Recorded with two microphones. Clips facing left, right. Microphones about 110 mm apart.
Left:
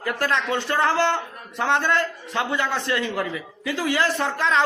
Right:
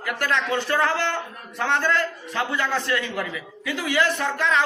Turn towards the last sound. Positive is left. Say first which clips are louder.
# left 1 dB
turn(degrees=30)  # may be behind; listen again after turning